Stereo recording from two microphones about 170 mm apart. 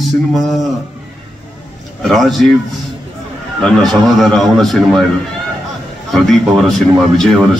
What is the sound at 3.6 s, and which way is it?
A man's voice, centre (ahead or behind).